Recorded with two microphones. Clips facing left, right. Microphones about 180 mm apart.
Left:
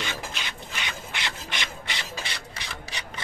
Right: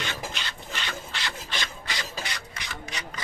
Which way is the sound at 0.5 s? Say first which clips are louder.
Even; 20° left (ahead or behind).